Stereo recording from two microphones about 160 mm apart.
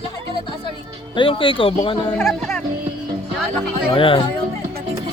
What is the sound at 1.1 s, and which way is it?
Speech, 30° left (ahead or behind).